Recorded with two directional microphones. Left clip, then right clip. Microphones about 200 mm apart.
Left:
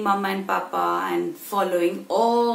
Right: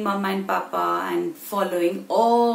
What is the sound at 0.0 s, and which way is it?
Speech, centre (ahead or behind).